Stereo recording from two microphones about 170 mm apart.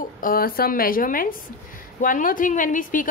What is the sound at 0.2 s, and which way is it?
A woman's voice, 60° left (ahead or behind).